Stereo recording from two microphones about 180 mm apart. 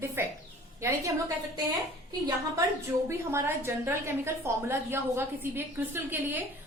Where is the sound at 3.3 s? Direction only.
15° right (ahead or behind).